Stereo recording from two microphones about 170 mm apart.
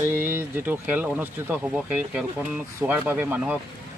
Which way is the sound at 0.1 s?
10° right (ahead or behind).